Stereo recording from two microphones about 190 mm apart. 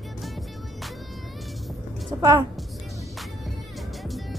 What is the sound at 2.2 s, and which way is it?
Speech, 25° right (ahead or behind).